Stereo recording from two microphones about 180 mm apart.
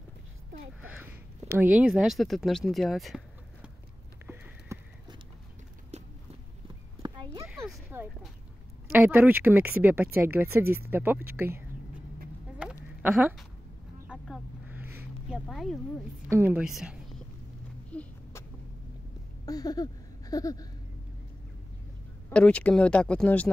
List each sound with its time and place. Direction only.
1.5 s speech: 10° right (ahead or behind)
4.7 s clip-clop: 15° right (ahead or behind)
7.0 s clip-clop: 20° right (ahead or behind)
7.9 s a sound: 10° right (ahead or behind)
8.9 s speech: 10° right (ahead or behind)
13.0 s speech: 5° right (ahead or behind)
14.0 s vehicle: centre (ahead or behind)
14.8 s a sound: 15° right (ahead or behind)
15.2 s speech: centre (ahead or behind)
16.3 s a woman's voice: 10° right (ahead or behind)
17.9 s a sound: 5° left (ahead or behind)
19.4 s a sound: 20° left (ahead or behind)
22.3 s speech: 5° left (ahead or behind)